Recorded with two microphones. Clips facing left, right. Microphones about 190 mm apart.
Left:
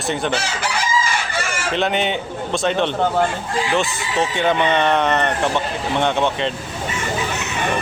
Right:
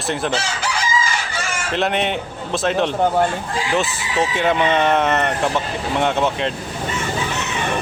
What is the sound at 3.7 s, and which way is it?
Speech, centre (ahead or behind).